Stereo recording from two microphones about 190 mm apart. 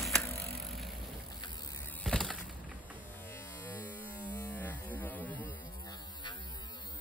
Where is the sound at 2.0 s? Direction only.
5° left (ahead or behind).